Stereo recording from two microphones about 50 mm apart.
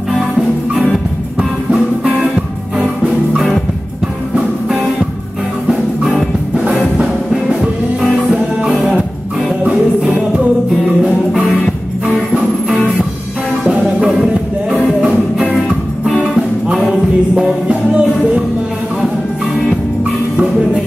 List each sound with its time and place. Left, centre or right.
4.4 s music: centre
5.7 s music: centre
7.0 s music: centre
13.7 s music: centre
16.8 s music: centre
17.6 s music: right